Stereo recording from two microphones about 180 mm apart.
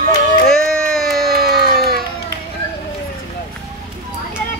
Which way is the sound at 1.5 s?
60° right (ahead or behind).